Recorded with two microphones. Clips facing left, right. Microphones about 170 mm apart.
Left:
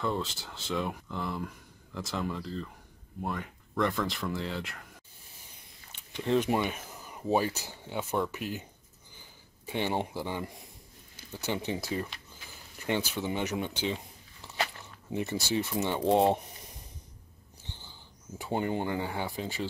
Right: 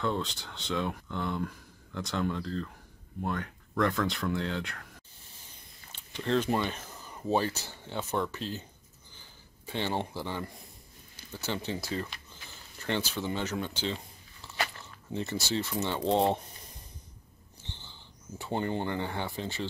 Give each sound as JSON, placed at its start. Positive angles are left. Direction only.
{"t": 0.0, "sound": "speech", "side_deg": 5}
{"t": 6.1, "sound": "speech", "side_deg": 15}
{"t": 9.7, "sound": "speech", "side_deg": 15}
{"t": 17.6, "sound": "a sound", "side_deg": 10}
{"t": 18.4, "sound": "speech", "side_deg": 10}